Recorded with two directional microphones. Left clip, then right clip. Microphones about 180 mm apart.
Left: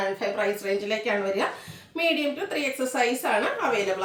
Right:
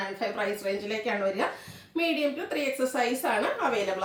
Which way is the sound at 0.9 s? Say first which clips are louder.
Left 2 dB; 15° left (ahead or behind).